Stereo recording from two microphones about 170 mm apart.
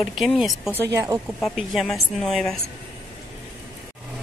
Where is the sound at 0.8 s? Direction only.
20° right (ahead or behind).